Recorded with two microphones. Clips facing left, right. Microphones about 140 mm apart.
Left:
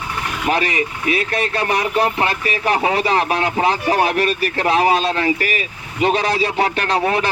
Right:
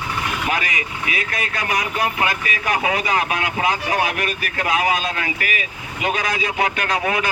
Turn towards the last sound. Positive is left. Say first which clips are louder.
# left 3 dB
turn(degrees=35)  # may be behind; listen again after turning